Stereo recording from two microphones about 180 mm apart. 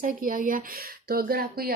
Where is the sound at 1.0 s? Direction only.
55° right (ahead or behind).